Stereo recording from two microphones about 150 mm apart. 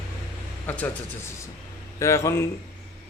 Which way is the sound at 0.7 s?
10° left (ahead or behind).